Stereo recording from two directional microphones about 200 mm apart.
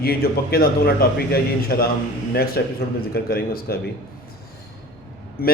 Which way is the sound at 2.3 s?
50° left (ahead or behind).